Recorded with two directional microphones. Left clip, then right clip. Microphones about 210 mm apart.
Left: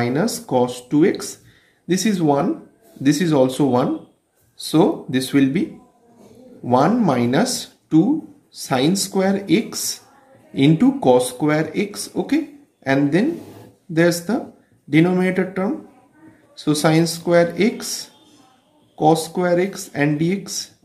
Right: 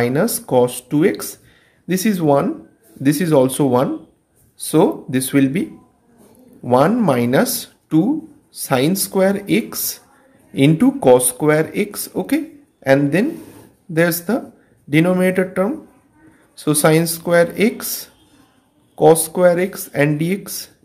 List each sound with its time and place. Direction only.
0.0 s speech: 45° right (ahead or behind)